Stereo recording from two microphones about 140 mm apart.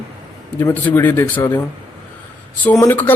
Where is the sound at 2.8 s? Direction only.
15° left (ahead or behind).